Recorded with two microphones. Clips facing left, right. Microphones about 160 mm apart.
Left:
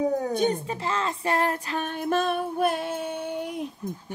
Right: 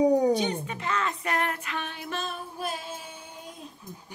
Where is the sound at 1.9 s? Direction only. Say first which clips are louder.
Left 10 dB; 50° left (ahead or behind); by 3.6 s 70° left (ahead or behind).